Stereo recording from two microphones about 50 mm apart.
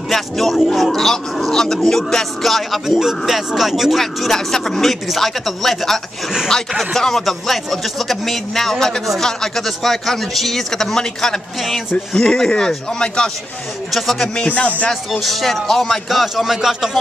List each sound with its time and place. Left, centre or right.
0.1 s a man's voice: centre
4.0 s a man's voice: centre
13.9 s a man's voice: centre
14.3 s speech: left
15.0 s a man's voice: centre